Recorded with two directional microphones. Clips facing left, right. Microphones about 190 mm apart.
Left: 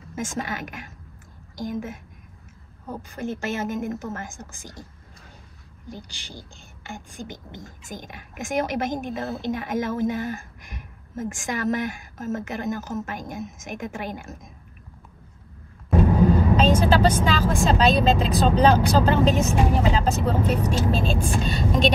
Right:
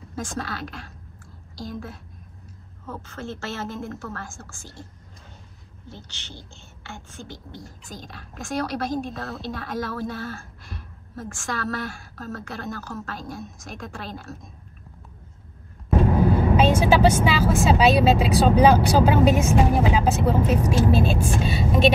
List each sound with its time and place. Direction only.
0.2 s a woman's voice: 20° left (ahead or behind)
3.0 s a woman's voice: 15° left (ahead or behind)
5.9 s a woman's voice: 15° left (ahead or behind)
16.5 s speech: 10° right (ahead or behind)